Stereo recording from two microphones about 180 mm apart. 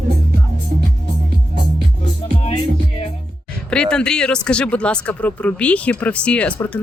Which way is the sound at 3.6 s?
5° left (ahead or behind).